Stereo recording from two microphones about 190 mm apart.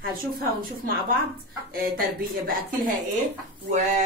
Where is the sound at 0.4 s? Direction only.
50° right (ahead or behind).